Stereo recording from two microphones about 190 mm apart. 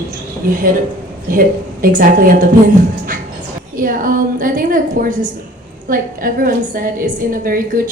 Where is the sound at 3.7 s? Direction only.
45° right (ahead or behind).